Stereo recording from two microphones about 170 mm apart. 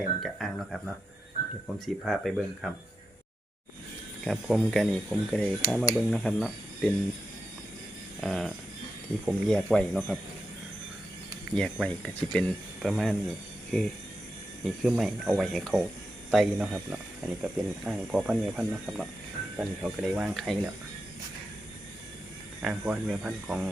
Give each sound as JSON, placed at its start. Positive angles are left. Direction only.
{"t": 0.2, "sound": "speech", "side_deg": 0}
{"t": 4.2, "sound": "speech", "side_deg": 0}
{"t": 8.2, "sound": "speech", "side_deg": 0}
{"t": 11.5, "sound": "speech", "side_deg": 5}
{"t": 22.6, "sound": "speech", "side_deg": -5}